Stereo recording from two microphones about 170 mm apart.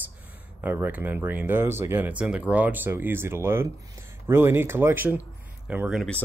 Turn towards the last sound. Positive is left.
turn(degrees=-5)  # may be behind; listen again after turning